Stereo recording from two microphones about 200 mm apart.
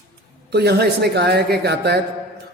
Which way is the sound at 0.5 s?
55° right (ahead or behind).